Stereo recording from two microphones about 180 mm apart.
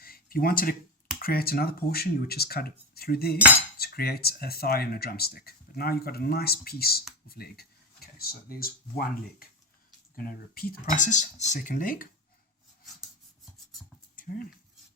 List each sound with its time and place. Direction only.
0.0 s a sound: 55° left (ahead or behind)
1.2 s speech: 55° left (ahead or behind)
3.3 s cutlery: 5° right (ahead or behind)
3.8 s speech: 60° left (ahead or behind)
10.5 s speech: 55° left (ahead or behind)
10.9 s speech: 45° left (ahead or behind)